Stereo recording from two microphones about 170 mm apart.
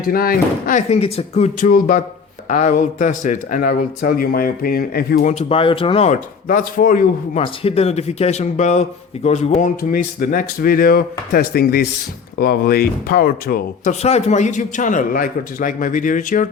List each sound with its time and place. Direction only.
0.0 s a man's voice: 60° left (ahead or behind); by 6.1 s 35° left (ahead or behind)
6.5 s a man's voice: 50° left (ahead or behind)
7.4 s a man's voice: 35° left (ahead or behind); by 13.9 s 60° left (ahead or behind)
14.0 s a man's voice: 40° left (ahead or behind)